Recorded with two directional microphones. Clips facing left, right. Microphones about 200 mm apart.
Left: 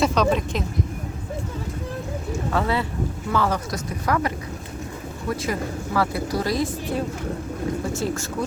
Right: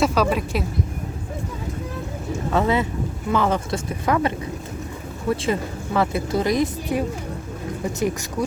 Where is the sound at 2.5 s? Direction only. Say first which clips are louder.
Right 4 dB; 20° right (ahead or behind).